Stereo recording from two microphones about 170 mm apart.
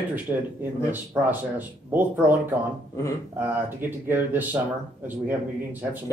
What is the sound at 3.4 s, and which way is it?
Speech, 10° right (ahead or behind).